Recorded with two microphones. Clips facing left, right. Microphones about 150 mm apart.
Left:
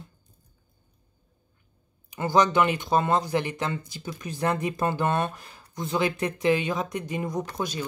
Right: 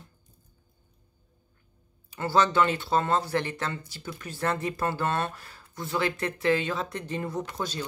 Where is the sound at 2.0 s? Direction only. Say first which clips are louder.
Left 2 dB; 15° left (ahead or behind).